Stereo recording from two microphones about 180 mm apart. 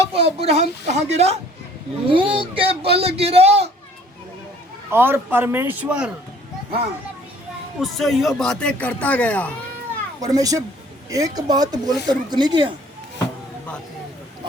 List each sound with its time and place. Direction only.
0.0 s a man's voice: 35° right (ahead or behind)
4.9 s a man's voice: 15° right (ahead or behind)
7.8 s speech: centre (ahead or behind)
10.2 s speech: 20° right (ahead or behind)